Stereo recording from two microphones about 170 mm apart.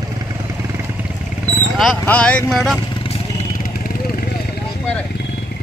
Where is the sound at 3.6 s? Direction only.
55° left (ahead or behind).